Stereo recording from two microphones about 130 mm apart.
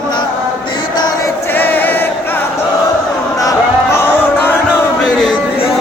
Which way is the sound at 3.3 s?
20° left (ahead or behind).